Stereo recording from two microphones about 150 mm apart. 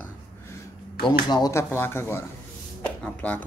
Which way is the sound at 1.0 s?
25° left (ahead or behind).